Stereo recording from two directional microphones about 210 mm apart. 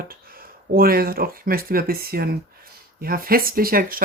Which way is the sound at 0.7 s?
45° right (ahead or behind).